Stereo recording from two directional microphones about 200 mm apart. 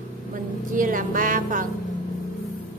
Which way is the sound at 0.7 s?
40° right (ahead or behind).